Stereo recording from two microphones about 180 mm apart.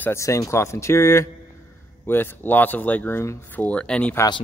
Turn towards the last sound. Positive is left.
turn(degrees=5)  # may be behind; listen again after turning